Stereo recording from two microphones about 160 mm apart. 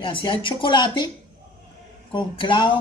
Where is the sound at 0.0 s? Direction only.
30° left (ahead or behind).